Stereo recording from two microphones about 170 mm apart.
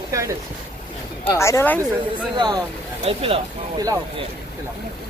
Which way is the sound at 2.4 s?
25° right (ahead or behind).